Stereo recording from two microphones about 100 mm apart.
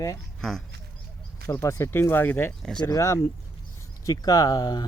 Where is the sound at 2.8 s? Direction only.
35° left (ahead or behind).